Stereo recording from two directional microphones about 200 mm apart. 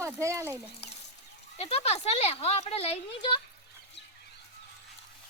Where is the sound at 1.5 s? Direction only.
30° left (ahead or behind).